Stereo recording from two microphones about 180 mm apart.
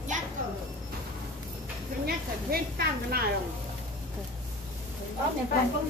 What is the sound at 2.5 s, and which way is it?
Speech, 60° right (ahead or behind).